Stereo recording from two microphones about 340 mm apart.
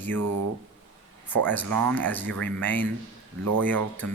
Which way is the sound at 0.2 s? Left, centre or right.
Right.